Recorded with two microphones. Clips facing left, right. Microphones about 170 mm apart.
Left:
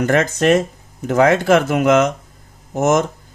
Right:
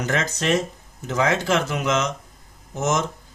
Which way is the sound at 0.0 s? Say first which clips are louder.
Left 9 dB; 55° left (ahead or behind).